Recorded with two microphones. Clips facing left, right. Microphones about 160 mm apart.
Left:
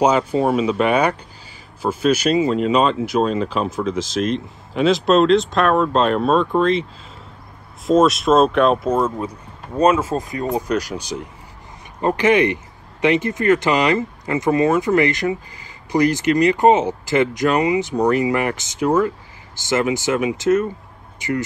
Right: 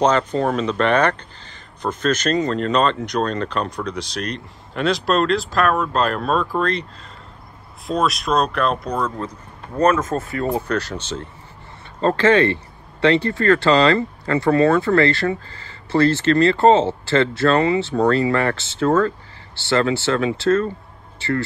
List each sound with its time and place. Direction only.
0.0 s speech: 10° left (ahead or behind)